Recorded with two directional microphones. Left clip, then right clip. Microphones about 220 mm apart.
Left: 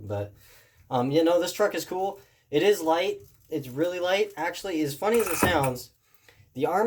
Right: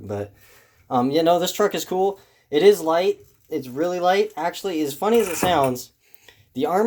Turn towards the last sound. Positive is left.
turn(degrees=-25)  # may be behind; listen again after turning